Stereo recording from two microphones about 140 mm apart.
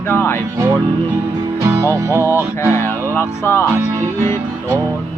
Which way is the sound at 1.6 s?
20° right (ahead or behind).